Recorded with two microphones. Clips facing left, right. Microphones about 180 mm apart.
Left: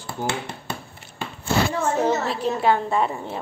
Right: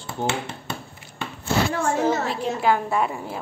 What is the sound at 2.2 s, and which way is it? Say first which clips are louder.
A woman's voice: left 1 dB; centre (ahead or behind).